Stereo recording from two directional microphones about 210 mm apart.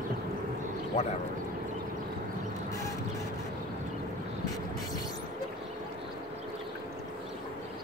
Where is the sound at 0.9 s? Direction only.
35° left (ahead or behind).